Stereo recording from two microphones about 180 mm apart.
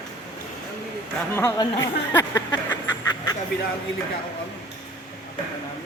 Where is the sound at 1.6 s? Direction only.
20° left (ahead or behind).